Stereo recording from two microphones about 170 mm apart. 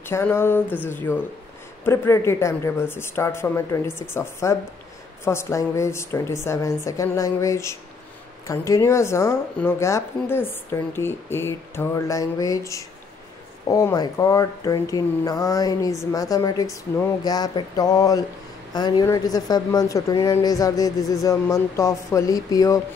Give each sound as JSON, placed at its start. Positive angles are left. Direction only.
{"t": 0.0, "sound": "speech", "side_deg": 15}